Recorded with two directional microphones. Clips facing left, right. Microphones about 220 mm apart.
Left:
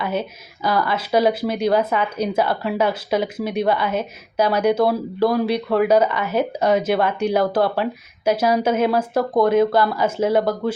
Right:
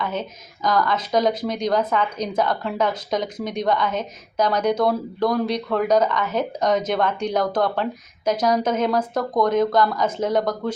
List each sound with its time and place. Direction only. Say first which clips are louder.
0.0 s speech: left 3 dB; 10° left (ahead or behind)